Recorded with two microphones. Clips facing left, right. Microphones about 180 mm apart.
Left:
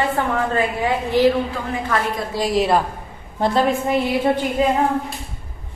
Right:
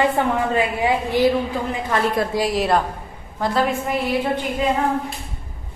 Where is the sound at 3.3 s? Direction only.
25° left (ahead or behind).